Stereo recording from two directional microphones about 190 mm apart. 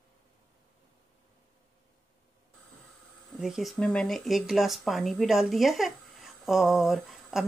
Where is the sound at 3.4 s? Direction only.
Centre (ahead or behind).